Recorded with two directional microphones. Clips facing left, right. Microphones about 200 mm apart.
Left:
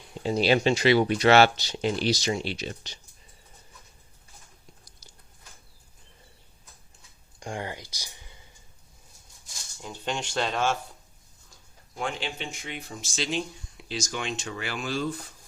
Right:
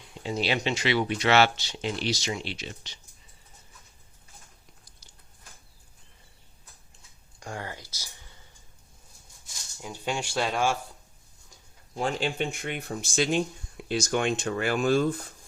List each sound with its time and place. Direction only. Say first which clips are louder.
0.1 s speech: left 6 dB; 40° left (ahead or behind)
7.3 s a sound: left 3 dB; 25° left (ahead or behind)
9.8 s speech: right 1 dB; 10° right (ahead or behind)
11.9 s speech: right 4 dB; 40° right (ahead or behind)
12.4 s speech: right 6 dB; 55° right (ahead or behind)